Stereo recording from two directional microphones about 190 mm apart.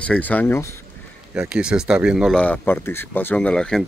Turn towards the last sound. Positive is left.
turn(degrees=5)  # may be behind; listen again after turning